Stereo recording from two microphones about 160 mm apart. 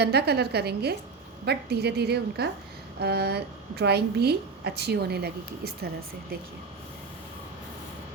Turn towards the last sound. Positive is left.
turn(degrees=-80)